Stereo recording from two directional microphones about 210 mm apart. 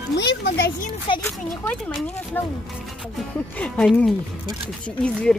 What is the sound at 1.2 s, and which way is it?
A child's voice, 5° left (ahead or behind).